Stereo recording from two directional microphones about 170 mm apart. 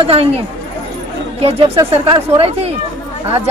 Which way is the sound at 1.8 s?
30° right (ahead or behind).